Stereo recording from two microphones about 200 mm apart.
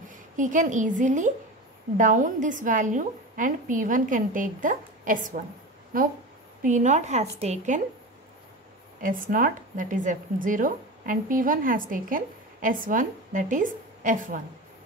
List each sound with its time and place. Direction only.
0.1 s a woman's voice: 40° right (ahead or behind)
9.0 s a woman's voice: 45° right (ahead or behind)